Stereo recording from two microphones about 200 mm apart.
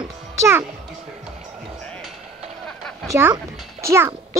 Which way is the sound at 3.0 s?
15° right (ahead or behind).